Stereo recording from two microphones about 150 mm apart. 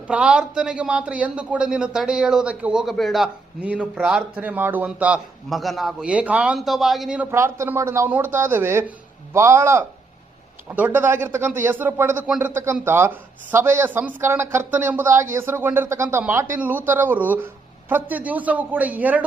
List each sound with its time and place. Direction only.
0.1 s speech: 5° right (ahead or behind)
7.3 s a man's voice: 20° right (ahead or behind)